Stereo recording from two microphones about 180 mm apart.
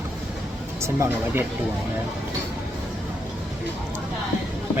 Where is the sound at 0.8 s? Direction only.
15° right (ahead or behind).